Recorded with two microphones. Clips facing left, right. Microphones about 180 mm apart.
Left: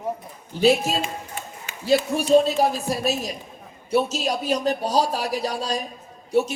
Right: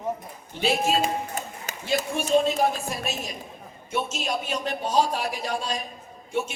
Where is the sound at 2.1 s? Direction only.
35° left (ahead or behind).